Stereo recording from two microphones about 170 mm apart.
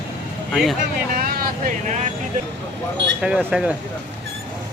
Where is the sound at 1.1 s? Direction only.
55° right (ahead or behind).